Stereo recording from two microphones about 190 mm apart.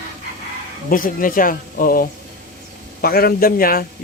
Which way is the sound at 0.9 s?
45° left (ahead or behind).